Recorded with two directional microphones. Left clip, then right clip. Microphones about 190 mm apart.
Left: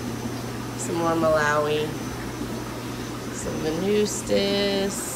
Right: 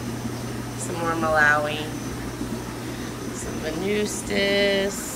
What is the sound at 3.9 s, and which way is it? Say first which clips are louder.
Speech: left 3 dB; 20° left (ahead or behind).